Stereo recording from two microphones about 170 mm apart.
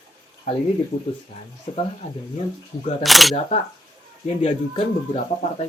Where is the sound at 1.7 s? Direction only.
40° left (ahead or behind).